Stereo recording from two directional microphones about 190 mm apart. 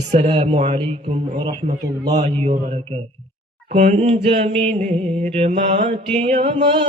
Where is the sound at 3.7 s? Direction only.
35° right (ahead or behind).